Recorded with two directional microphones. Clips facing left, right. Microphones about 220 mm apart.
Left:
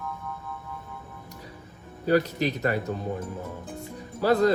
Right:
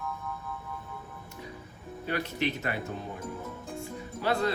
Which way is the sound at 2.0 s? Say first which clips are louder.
Left 8 dB; 40° left (ahead or behind).